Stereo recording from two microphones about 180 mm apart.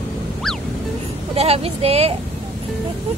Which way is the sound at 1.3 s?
35° right (ahead or behind).